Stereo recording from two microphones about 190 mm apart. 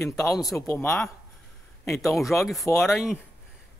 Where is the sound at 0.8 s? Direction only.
Centre (ahead or behind).